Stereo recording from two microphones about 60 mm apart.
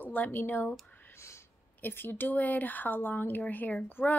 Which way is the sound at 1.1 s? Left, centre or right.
Left.